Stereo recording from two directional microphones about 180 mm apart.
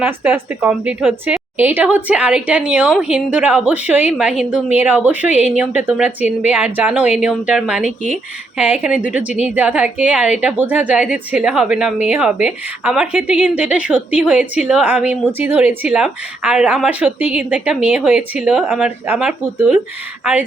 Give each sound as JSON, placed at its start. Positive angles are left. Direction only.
{"t": 0.0, "sound": "a woman's voice", "side_deg": -10}
{"t": 5.3, "sound": "a woman's voice", "side_deg": 40}
{"t": 5.7, "sound": "a woman's voice", "side_deg": -10}